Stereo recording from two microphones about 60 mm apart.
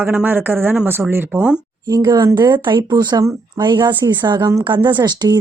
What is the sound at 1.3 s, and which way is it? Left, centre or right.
Speech, centre.